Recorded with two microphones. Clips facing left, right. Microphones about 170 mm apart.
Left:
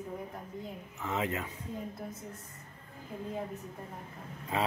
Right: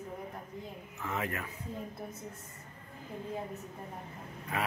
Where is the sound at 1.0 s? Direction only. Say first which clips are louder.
Left 3 dB; 20° left (ahead or behind).